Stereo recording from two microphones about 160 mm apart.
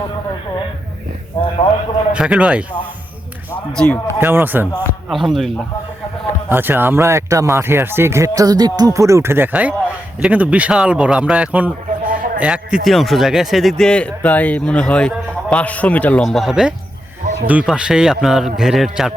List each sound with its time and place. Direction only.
2.1 s speech: 5° right (ahead or behind)
3.7 s a man's voice: 5° left (ahead or behind)
4.2 s speech: 15° right (ahead or behind)
4.9 s speech: centre (ahead or behind)
6.5 s speech: 10° right (ahead or behind)
12.1 s a sound: 55° right (ahead or behind)
12.4 s a man's voice: 5° right (ahead or behind)